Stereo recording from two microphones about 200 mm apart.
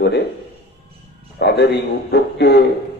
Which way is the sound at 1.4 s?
55° left (ahead or behind).